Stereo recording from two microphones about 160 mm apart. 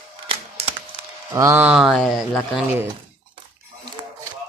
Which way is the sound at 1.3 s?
20° right (ahead or behind).